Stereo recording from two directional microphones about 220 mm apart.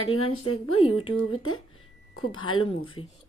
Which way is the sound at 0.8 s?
25° left (ahead or behind).